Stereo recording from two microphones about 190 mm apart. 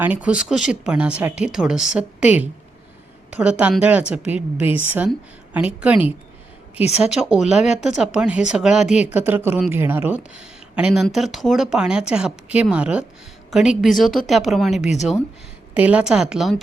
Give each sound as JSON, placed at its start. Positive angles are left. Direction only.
{"t": 0.0, "sound": "a woman's voice", "side_deg": -5}
{"t": 7.3, "sound": "speech", "side_deg": -5}
{"t": 14.8, "sound": "speech", "side_deg": 35}
{"t": 15.7, "sound": "speech", "side_deg": -5}